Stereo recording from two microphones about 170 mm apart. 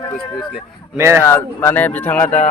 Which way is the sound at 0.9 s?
15° right (ahead or behind).